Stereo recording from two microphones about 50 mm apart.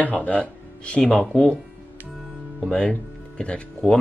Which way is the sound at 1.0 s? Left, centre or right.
Centre.